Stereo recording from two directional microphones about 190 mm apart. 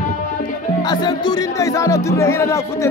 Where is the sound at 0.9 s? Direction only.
20° left (ahead or behind).